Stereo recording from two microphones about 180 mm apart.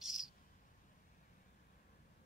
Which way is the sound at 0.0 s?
Centre (ahead or behind).